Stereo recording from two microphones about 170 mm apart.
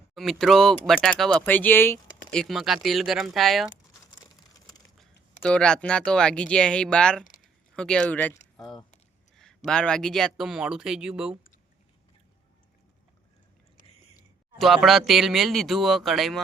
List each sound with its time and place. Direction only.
0.1 s speech: centre (ahead or behind)
2.3 s speech: centre (ahead or behind)
5.4 s speech: 5° left (ahead or behind)
8.5 s speech: 20° left (ahead or behind)
9.6 s speech: 5° left (ahead or behind)
14.6 s speech: centre (ahead or behind)